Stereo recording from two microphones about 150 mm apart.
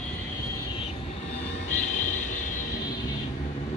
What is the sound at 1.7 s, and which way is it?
Vehicle, 55° left (ahead or behind).